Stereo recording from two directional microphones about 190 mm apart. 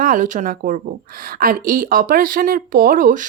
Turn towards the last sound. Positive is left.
turn(degrees=-45)  # may be behind; listen again after turning